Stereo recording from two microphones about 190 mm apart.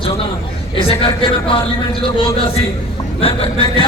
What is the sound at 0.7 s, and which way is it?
Music, 25° left (ahead or behind).